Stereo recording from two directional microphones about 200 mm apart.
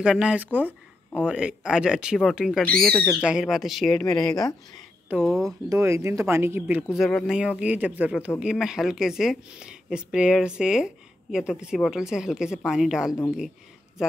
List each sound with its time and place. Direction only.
0.0 s speech: 5° right (ahead or behind)
4.1 s speech: 20° left (ahead or behind)
5.1 s speech: centre (ahead or behind)
5.7 s speech: 15° right (ahead or behind)